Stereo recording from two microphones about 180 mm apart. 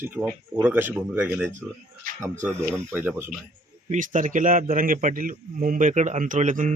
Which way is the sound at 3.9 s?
45° right (ahead or behind).